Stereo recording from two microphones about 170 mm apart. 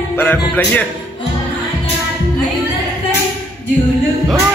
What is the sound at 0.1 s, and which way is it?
Speech, 10° left (ahead or behind).